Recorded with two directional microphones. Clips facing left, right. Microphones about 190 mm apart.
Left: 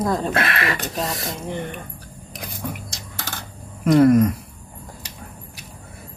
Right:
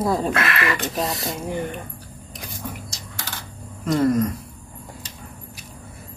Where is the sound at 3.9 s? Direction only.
65° left (ahead or behind).